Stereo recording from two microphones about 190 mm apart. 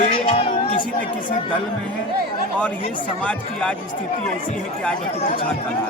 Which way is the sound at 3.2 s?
5° left (ahead or behind).